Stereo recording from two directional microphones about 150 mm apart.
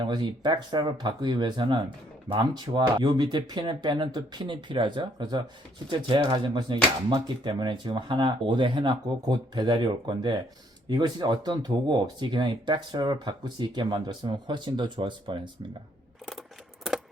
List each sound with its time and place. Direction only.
0.0 s speech: 30° right (ahead or behind)